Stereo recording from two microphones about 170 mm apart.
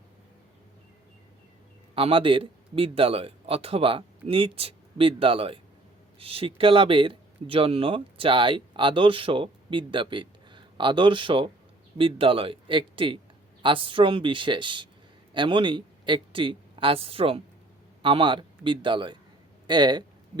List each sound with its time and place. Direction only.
2.0 s a man's voice: 35° right (ahead or behind)